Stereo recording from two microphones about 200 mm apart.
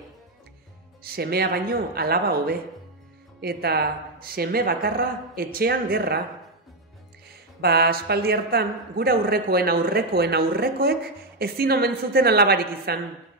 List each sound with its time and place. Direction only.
1.0 s a man's voice: 50° right (ahead or behind)
7.6 s a man's voice: 50° right (ahead or behind)